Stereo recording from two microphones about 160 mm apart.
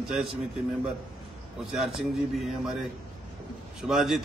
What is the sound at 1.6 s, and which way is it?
A man's voice, centre (ahead or behind).